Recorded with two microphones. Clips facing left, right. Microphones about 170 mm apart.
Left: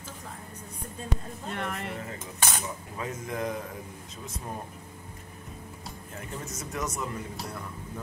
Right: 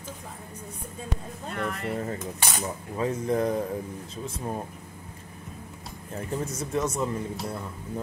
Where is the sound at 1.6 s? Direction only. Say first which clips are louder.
Right 6 dB; 40° right (ahead or behind).